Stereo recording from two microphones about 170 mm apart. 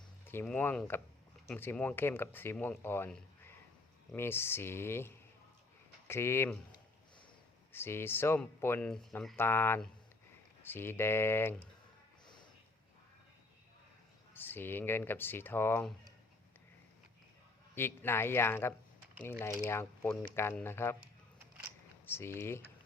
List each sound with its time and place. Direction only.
0.3 s speech: 10° left (ahead or behind)
7.7 s speech: 15° left (ahead or behind)
12.2 s snort: 25° left (ahead or behind)
14.3 s speech: 10° left (ahead or behind)
17.7 s speech: 15° left (ahead or behind)
22.1 s speech: 15° left (ahead or behind)